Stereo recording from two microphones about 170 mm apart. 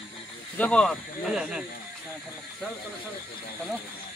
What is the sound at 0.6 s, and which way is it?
Speech, 5° left (ahead or behind).